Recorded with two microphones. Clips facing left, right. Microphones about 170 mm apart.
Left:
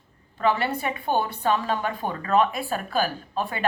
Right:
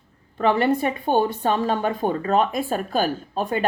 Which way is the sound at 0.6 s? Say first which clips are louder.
Right 6 dB; 45° right (ahead or behind).